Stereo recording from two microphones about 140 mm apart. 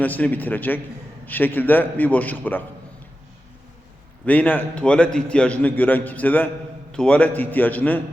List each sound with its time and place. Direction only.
0.0 s a man's voice: 10° left (ahead or behind)
4.3 s a man's voice: 10° left (ahead or behind)